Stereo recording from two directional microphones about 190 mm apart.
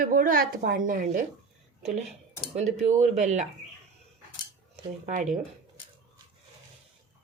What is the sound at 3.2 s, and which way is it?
Speech, 40° right (ahead or behind).